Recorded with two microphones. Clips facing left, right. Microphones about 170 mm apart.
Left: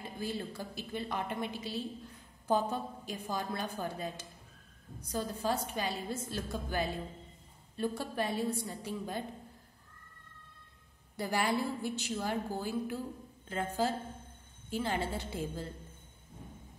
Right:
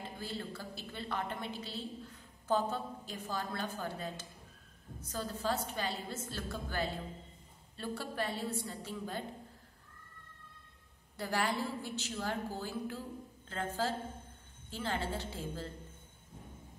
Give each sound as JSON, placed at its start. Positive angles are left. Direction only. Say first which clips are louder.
{"t": 0.2, "sound": "a woman's voice", "louder": "left 6 dB", "side_deg": 15}
{"t": 11.1, "sound": "a woman's voice", "louder": "left 3 dB", "side_deg": 15}